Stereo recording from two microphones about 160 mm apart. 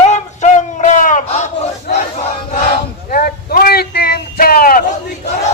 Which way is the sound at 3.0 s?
65° left (ahead or behind).